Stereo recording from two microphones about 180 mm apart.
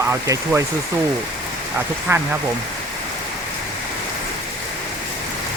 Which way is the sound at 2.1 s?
15° right (ahead or behind).